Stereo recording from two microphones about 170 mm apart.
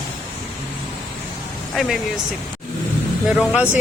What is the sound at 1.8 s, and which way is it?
Speech, centre (ahead or behind).